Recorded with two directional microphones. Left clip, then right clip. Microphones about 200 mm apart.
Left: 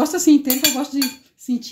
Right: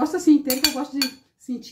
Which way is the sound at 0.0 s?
50° left (ahead or behind).